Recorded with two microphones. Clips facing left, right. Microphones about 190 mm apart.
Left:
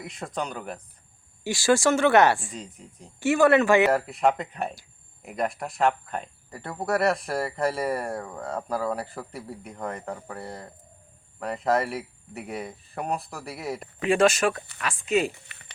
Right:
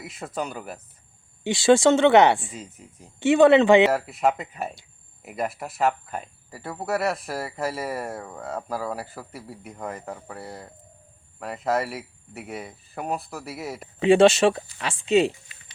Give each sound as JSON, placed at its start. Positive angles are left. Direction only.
{"t": 0.0, "sound": "speech", "side_deg": -5}
{"t": 1.5, "sound": "speech", "side_deg": -20}
{"t": 2.5, "sound": "speech", "side_deg": -5}
{"t": 3.2, "sound": "speech", "side_deg": -20}
{"t": 3.9, "sound": "speech", "side_deg": 0}
{"t": 14.0, "sound": "speech", "side_deg": -25}
{"t": 15.3, "sound": "speech", "side_deg": 65}